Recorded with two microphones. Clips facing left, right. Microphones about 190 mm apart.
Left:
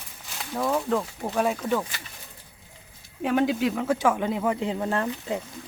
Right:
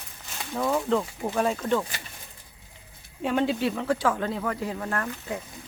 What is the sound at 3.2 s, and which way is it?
Speech, 10° left (ahead or behind).